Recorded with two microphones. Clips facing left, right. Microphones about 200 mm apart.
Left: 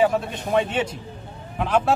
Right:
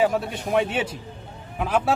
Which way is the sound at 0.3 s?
10° right (ahead or behind).